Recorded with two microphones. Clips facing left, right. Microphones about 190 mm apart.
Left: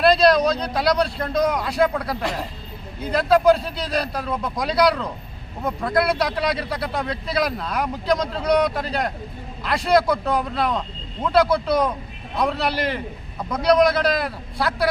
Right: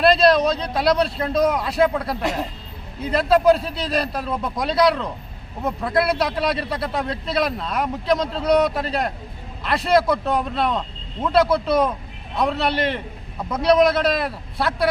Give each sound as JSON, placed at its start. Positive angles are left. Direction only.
{"t": 0.0, "sound": "a man's voice", "side_deg": 0}